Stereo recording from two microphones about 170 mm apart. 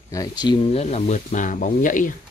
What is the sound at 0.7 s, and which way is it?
Speech, 40° left (ahead or behind).